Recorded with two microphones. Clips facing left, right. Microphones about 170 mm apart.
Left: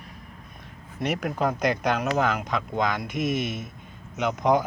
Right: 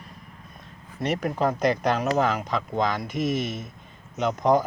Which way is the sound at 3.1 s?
50° left (ahead or behind).